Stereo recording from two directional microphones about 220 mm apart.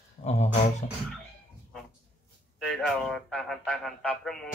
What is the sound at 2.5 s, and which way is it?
Speech, centre (ahead or behind).